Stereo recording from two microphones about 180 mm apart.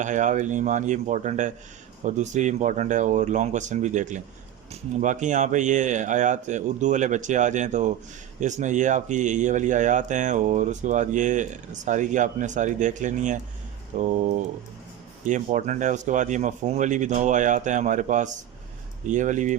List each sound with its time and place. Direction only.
0.0 s speech: 45° right (ahead or behind)